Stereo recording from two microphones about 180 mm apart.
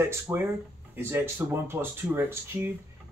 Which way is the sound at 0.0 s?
15° right (ahead or behind).